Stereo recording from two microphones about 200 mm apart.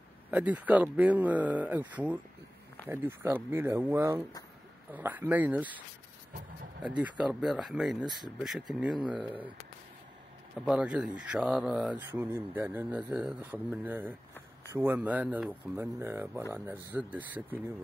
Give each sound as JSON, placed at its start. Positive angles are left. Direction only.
{"t": 0.3, "sound": "speech", "side_deg": -5}
{"t": 6.8, "sound": "speech", "side_deg": -5}
{"t": 8.0, "sound": "speech", "side_deg": -20}
{"t": 8.4, "sound": "speech", "side_deg": 0}
{"t": 10.6, "sound": "speech", "side_deg": -5}